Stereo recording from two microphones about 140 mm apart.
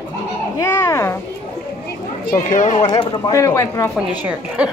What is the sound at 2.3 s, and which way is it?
Speech, 65° left (ahead or behind).